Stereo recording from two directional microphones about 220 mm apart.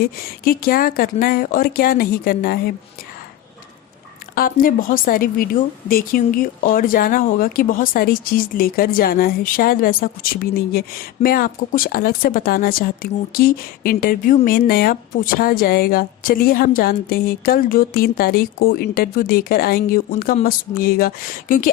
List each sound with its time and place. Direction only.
0.0 s speech: 40° left (ahead or behind)
4.4 s speech: 40° left (ahead or behind)